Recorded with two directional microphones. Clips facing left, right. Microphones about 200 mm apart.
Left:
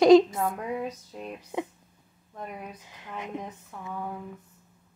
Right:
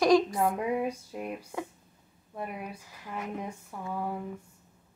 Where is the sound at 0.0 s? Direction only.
25° left (ahead or behind).